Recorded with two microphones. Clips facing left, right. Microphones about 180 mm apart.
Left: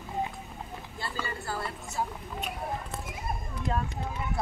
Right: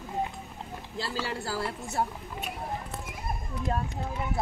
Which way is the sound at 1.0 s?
90° right.